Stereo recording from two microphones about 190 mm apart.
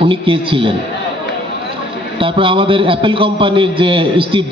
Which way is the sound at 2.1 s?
25° right (ahead or behind).